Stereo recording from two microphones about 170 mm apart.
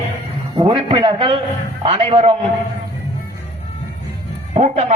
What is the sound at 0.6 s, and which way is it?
A man's voice, 30° right (ahead or behind).